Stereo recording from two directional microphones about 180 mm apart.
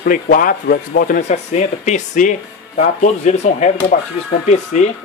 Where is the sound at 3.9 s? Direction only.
50° left (ahead or behind).